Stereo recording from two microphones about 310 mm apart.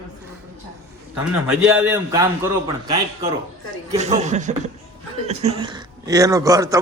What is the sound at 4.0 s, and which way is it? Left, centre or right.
A man's voice, right.